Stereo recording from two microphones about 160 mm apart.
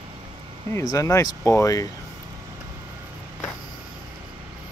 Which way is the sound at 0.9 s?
20° left (ahead or behind).